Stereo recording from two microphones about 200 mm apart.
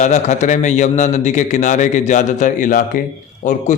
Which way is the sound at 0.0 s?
35° left (ahead or behind).